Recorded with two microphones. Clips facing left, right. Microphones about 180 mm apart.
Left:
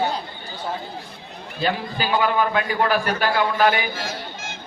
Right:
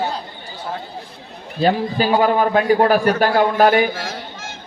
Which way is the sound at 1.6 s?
40° right (ahead or behind).